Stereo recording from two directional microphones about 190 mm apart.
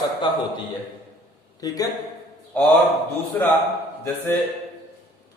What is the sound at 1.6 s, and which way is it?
Speech, 20° left (ahead or behind).